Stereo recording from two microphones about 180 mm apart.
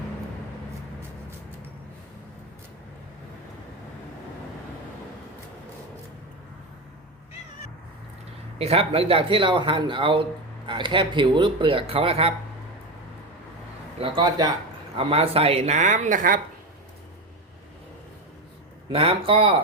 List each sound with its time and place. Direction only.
8.5 s speech: 35° right (ahead or behind)
14.0 s speech: 25° right (ahead or behind); by 16.4 s 50° right (ahead or behind)
18.9 s speech: 30° right (ahead or behind)